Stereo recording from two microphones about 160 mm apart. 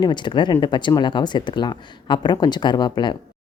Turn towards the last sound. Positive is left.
turn(degrees=25)  # may be behind; listen again after turning